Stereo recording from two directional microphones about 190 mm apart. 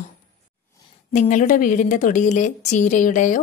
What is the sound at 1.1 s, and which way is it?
A woman's voice, 40° left (ahead or behind).